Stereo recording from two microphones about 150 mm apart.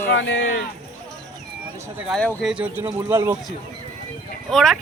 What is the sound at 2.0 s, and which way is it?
Speech, centre (ahead or behind).